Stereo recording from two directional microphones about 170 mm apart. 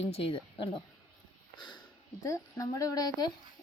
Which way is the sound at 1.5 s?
25° left (ahead or behind).